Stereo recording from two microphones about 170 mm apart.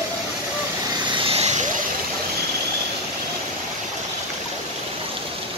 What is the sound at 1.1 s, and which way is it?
Vehicle, 35° right (ahead or behind).